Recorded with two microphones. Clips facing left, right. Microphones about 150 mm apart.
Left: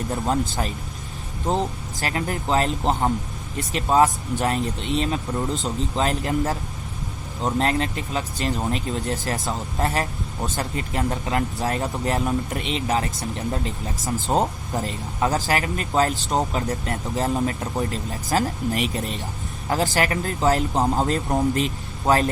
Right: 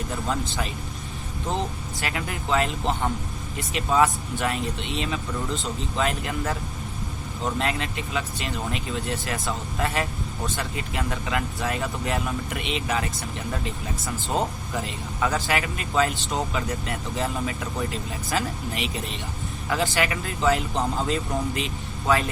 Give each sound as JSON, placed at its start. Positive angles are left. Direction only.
{"t": 0.3, "sound": "speech", "side_deg": 40}